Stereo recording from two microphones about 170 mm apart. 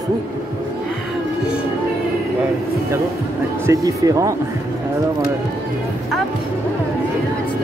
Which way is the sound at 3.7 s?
20° right (ahead or behind).